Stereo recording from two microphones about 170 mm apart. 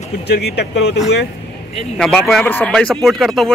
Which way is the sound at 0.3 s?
75° left (ahead or behind).